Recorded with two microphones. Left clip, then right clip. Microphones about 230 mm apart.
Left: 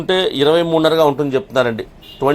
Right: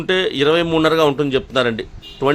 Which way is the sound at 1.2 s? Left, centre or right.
Right.